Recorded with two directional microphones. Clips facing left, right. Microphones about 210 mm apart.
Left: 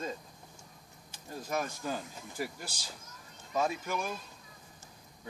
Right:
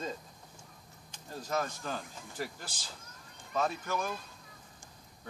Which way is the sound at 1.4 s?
10° left (ahead or behind).